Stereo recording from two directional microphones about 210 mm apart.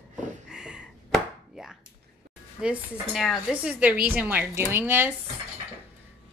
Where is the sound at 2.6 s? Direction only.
Centre (ahead or behind).